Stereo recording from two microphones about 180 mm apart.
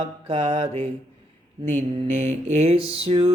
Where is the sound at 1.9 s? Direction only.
40° right (ahead or behind).